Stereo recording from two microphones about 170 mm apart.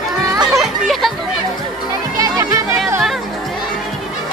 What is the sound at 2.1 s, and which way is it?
Music, 20° right (ahead or behind).